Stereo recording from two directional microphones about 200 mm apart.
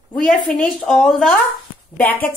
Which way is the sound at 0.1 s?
5° left (ahead or behind).